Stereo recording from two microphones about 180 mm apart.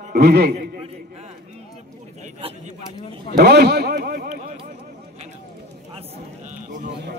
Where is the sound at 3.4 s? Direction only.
65° right (ahead or behind).